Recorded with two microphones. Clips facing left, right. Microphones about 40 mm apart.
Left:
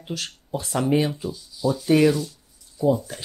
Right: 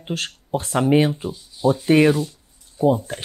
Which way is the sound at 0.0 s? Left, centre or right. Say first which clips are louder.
Right 4 dB; right.